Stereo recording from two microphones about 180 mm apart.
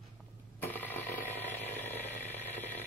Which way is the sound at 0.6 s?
10° left (ahead or behind).